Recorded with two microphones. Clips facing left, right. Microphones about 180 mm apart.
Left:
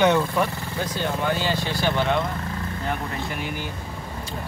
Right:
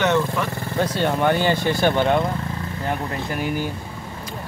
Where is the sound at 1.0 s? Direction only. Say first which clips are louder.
Right 5 dB; 60° right (ahead or behind).